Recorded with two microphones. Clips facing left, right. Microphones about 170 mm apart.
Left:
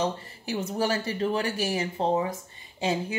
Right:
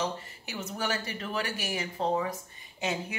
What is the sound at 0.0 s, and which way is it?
Speech, 30° left (ahead or behind).